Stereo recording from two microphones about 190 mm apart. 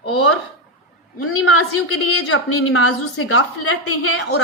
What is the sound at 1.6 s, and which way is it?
A woman's voice, 90° left.